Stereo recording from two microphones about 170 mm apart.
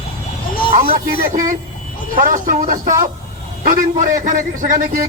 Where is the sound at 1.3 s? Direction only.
50° right (ahead or behind).